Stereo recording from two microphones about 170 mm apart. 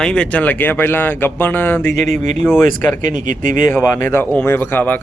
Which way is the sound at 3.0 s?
50° right (ahead or behind).